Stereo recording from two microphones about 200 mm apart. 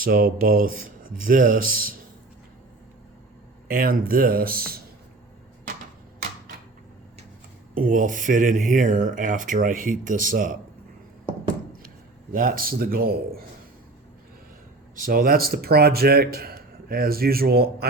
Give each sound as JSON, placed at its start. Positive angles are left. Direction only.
{"t": 0.0, "sound": "a man's voice", "side_deg": -45}
{"t": 3.7, "sound": "a man's voice", "side_deg": -45}
{"t": 7.8, "sound": "speech", "side_deg": -40}
{"t": 12.3, "sound": "a man's voice", "side_deg": -45}
{"t": 14.9, "sound": "a man's voice", "side_deg": -45}